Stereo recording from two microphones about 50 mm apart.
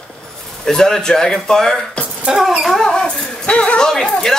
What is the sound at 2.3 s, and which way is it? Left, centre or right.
Speech, centre.